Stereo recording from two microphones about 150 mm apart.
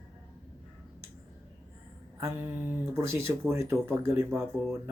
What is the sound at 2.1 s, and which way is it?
Speech, 15° right (ahead or behind).